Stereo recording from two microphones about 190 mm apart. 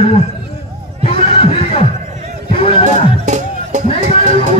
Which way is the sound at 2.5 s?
30° left (ahead or behind).